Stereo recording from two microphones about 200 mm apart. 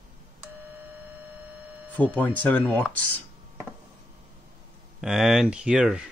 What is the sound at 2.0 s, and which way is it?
Speech, 10° left (ahead or behind).